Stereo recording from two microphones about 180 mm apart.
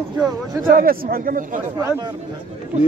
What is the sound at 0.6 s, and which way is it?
Speech, 50° right (ahead or behind).